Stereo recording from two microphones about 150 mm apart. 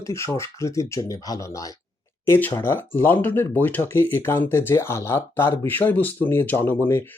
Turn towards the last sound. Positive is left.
turn(degrees=15)  # may be behind; listen again after turning